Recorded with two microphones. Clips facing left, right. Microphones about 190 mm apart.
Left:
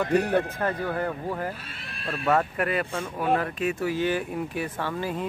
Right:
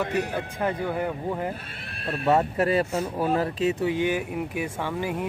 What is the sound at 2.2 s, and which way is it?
Speech, 25° right (ahead or behind).